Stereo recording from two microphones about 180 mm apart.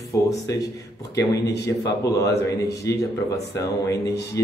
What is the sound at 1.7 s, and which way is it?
Speech, 20° left (ahead or behind).